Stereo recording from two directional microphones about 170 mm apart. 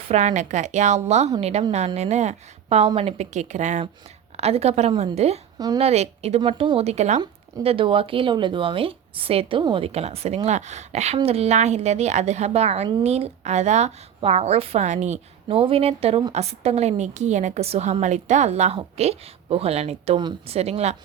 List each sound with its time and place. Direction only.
0.1 s a woman's voice: 40° right (ahead or behind)
5.5 s a woman's voice: 25° right (ahead or behind)
5.8 s speech: 40° right (ahead or behind)